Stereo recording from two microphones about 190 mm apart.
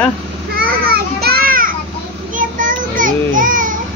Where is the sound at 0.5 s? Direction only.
55° right (ahead or behind).